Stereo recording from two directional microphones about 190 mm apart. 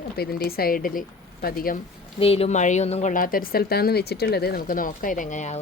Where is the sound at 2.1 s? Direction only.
30° left (ahead or behind).